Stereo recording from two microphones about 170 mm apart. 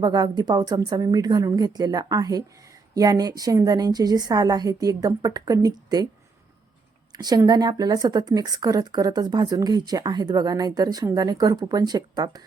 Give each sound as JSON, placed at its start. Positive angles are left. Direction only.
{"t": 0.0, "sound": "a woman's voice", "side_deg": -25}
{"t": 7.1, "sound": "a woman's voice", "side_deg": -25}